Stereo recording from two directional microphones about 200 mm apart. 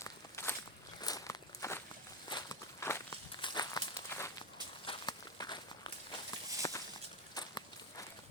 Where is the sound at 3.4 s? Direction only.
20° left (ahead or behind).